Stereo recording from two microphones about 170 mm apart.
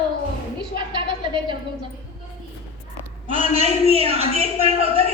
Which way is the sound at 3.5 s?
35° right (ahead or behind).